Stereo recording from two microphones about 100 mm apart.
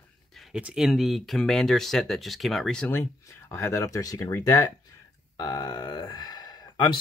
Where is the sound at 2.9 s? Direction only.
25° left (ahead or behind).